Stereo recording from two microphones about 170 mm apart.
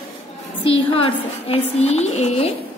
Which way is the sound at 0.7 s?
35° left (ahead or behind).